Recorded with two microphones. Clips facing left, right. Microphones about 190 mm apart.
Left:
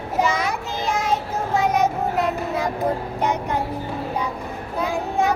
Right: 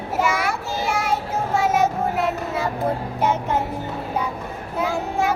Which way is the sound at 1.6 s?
Centre (ahead or behind).